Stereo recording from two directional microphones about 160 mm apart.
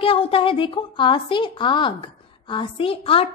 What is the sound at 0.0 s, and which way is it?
A woman's voice, 35° left (ahead or behind).